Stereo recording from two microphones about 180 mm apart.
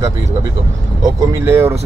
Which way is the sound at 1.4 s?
15° right (ahead or behind).